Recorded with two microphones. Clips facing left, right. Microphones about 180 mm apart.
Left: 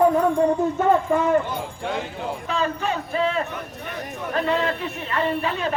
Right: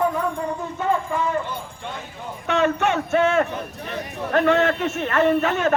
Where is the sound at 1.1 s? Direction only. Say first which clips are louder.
Left 4 dB; 45° left (ahead or behind).